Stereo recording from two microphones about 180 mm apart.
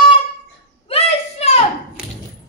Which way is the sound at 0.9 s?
35° left (ahead or behind).